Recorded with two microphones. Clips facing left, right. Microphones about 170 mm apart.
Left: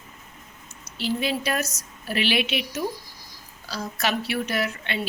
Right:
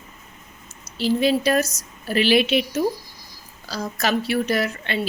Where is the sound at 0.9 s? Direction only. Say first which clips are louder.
Right 7 dB; 35° right (ahead or behind).